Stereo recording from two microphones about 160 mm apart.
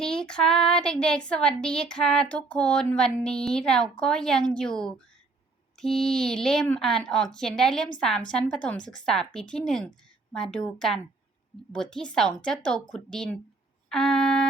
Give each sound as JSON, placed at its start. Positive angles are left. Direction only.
{"t": 0.0, "sound": "speech", "side_deg": 5}